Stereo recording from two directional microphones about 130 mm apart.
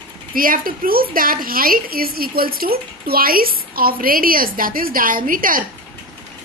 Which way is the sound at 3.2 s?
90° right.